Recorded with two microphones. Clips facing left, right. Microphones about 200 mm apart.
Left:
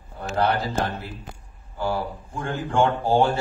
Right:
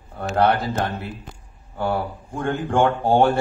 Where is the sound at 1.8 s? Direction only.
60° right (ahead or behind).